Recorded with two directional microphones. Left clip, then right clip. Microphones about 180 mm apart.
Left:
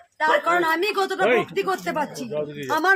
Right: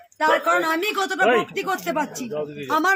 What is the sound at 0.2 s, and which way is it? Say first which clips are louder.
Speech: right 1 dB; 15° left (ahead or behind).